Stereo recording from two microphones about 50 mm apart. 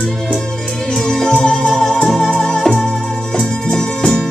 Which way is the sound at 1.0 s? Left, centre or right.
Centre.